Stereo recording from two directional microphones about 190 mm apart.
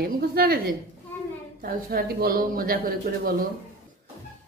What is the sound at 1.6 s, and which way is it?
A woman's voice, 50° right (ahead or behind).